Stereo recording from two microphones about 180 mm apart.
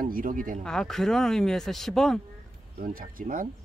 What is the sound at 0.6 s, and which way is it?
Speech, centre (ahead or behind).